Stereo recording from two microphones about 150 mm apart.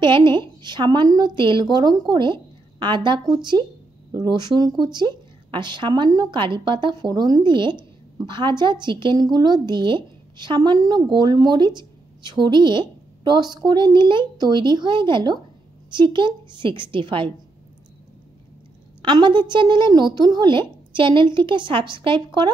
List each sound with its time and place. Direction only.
0.0 s a woman's voice: 30° right (ahead or behind)
19.0 s a woman's voice: 30° right (ahead or behind)